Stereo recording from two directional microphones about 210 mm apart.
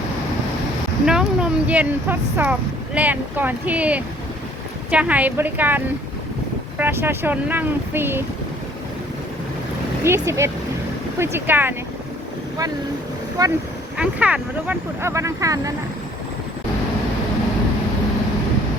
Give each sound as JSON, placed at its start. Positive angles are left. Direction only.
{"t": 1.0, "sound": "speech", "side_deg": -5}
{"t": 10.0, "sound": "speech", "side_deg": -15}
{"t": 13.4, "sound": "speech", "side_deg": -15}
{"t": 13.9, "sound": "speech", "side_deg": -5}